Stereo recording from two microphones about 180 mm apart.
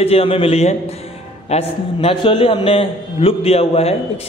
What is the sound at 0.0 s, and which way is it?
A man's voice, 30° left (ahead or behind).